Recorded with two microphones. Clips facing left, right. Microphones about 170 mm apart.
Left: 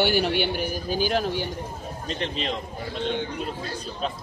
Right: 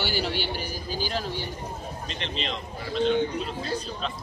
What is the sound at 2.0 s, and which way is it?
Speech, 45° left (ahead or behind).